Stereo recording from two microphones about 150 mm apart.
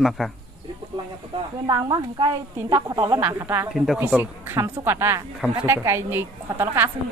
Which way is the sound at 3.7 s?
5° right (ahead or behind).